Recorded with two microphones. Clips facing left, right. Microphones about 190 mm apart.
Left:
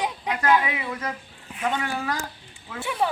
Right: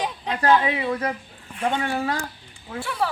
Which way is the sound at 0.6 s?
30° right (ahead or behind).